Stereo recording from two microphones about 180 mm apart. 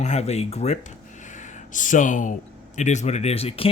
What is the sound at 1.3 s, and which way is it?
Gasp, 45° left (ahead or behind).